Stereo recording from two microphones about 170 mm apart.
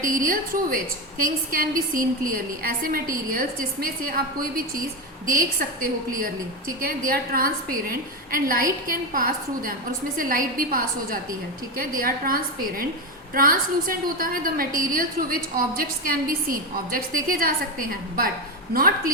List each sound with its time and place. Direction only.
0.0 s a woman's voice: 55° right (ahead or behind)